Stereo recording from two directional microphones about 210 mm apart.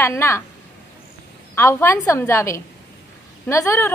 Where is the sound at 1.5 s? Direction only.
10° left (ahead or behind).